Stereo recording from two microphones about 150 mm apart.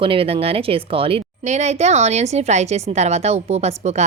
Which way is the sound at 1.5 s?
50° right (ahead or behind).